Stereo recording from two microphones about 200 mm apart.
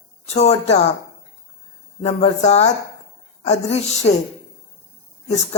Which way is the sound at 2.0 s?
30° left (ahead or behind).